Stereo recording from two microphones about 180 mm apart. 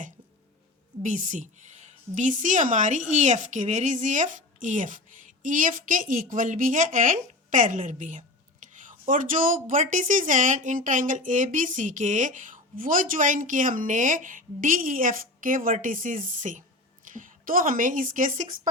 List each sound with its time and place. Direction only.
1.0 s a woman's voice: 45° right (ahead or behind)
8.6 s a sound: 45° right (ahead or behind)
9.6 s a woman's voice: 45° right (ahead or behind)